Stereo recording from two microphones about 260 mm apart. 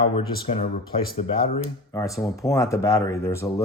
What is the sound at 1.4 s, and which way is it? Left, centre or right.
Speech, centre.